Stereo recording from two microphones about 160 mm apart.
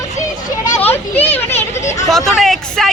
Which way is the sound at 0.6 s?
15° left (ahead or behind).